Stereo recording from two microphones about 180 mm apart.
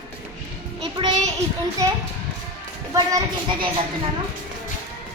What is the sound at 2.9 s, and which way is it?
Speech, 20° right (ahead or behind).